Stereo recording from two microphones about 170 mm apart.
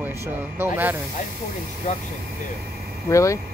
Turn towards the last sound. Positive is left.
turn(degrees=20)  # may be behind; listen again after turning